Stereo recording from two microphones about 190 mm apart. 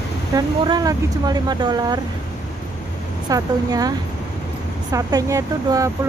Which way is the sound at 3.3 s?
20° right (ahead or behind).